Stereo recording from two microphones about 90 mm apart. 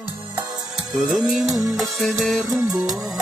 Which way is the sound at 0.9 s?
Centre (ahead or behind).